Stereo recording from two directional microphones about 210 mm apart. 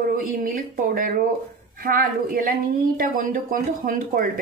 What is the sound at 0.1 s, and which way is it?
Speech, 40° right (ahead or behind).